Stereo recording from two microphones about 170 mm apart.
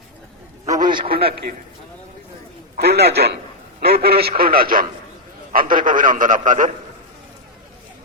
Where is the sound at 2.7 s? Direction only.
70° right (ahead or behind); by 6.7 s 50° right (ahead or behind).